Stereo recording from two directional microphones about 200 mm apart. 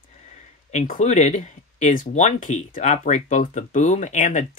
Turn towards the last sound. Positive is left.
turn(degrees=35)  # may be behind; listen again after turning